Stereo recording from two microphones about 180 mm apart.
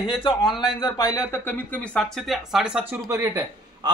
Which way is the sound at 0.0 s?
30° left (ahead or behind).